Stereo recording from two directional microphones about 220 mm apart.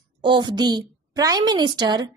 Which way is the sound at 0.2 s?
20° right (ahead or behind).